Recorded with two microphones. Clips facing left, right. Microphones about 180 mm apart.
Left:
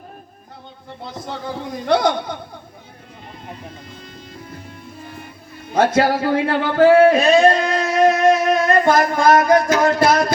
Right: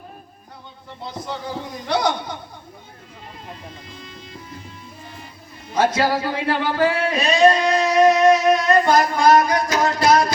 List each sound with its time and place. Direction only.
1.9 s speech: 55° left (ahead or behind)
5.7 s speech: 55° left (ahead or behind)